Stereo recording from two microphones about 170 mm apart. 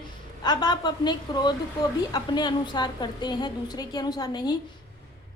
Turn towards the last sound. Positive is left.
turn(degrees=25)  # may be behind; listen again after turning